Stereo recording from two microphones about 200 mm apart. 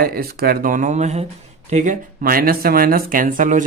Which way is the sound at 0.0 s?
50° right (ahead or behind).